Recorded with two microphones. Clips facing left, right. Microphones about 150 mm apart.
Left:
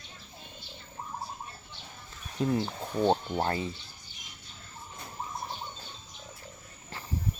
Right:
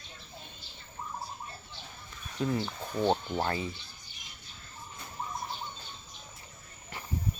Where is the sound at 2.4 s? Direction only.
20° left (ahead or behind).